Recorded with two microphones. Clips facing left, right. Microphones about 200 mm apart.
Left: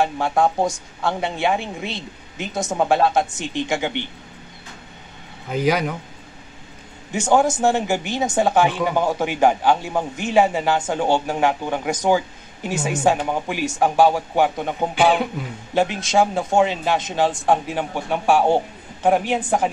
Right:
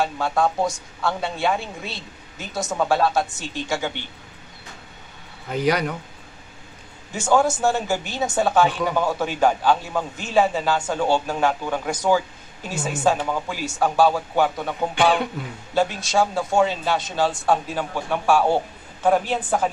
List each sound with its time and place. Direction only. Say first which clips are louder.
0.0 s a man's voice: left 3 dB; 15° left (ahead or behind)
5.5 s speech: left 1 dB; 5° left (ahead or behind)
7.1 s a man's voice: left 2 dB; 15° left (ahead or behind)